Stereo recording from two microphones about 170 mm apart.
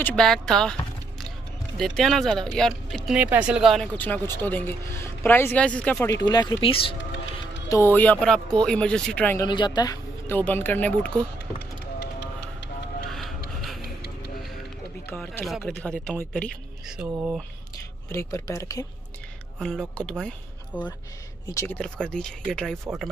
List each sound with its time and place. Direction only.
0.0 s speech: 5° left (ahead or behind)
3.2 s speech: 10° right (ahead or behind)
4.0 s speech: 10° left (ahead or behind)
6.1 s speech: 25° left (ahead or behind)
7.0 s music: 90° left
7.7 s speech: 15° left (ahead or behind)
9.5 s speech: 25° left (ahead or behind); by 11.1 s 10° left (ahead or behind)
11.3 s music: 80° left
15.0 s speech: 10° left (ahead or behind)
15.4 s speech: centre (ahead or behind)
18.1 s speech: 15° left (ahead or behind)
19.6 s speech: 5° left (ahead or behind)
21.5 s speech: 20° left (ahead or behind)
21.7 s speech: 5° left (ahead or behind)